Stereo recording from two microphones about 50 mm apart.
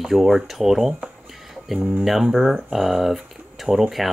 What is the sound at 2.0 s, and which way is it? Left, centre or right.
Speech, centre.